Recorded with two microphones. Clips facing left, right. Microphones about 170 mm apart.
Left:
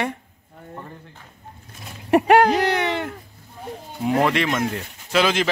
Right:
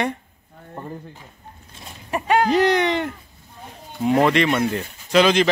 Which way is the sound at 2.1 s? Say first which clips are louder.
Left 5 dB; 65° left (ahead or behind).